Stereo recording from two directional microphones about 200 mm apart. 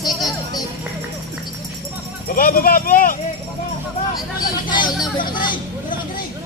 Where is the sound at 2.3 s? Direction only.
45° left (ahead or behind).